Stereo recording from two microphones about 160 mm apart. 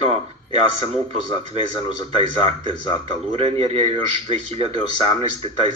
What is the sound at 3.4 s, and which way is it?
A man's voice, 40° right (ahead or behind).